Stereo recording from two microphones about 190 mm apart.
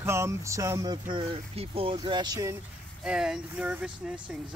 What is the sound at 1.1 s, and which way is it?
Speech, 30° right (ahead or behind).